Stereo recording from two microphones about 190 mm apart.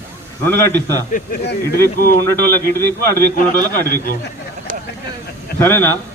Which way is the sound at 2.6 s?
55° right (ahead or behind).